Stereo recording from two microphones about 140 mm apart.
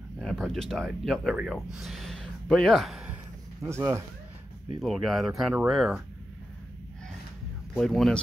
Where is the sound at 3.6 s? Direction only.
20° right (ahead or behind).